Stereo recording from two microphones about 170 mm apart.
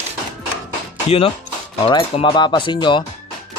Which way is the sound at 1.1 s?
35° left (ahead or behind).